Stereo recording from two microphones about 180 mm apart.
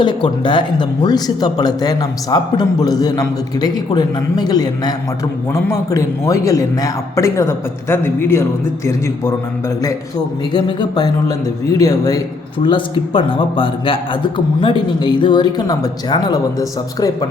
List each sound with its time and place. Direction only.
0.0 s a man's voice: 25° left (ahead or behind)